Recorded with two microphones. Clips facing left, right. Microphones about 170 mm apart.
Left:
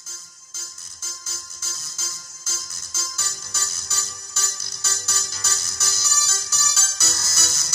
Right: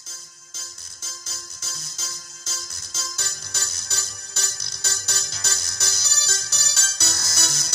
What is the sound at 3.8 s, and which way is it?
Music, 60° right (ahead or behind).